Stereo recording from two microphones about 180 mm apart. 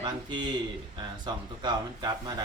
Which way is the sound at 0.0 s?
25° right (ahead or behind).